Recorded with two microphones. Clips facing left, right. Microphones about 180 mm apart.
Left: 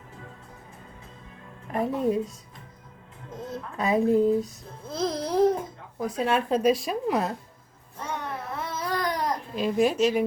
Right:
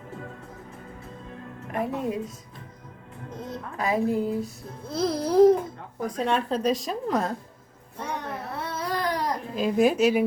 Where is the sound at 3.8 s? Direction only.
20° left (ahead or behind).